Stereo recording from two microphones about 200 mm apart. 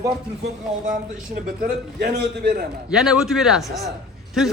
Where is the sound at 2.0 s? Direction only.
55° right (ahead or behind).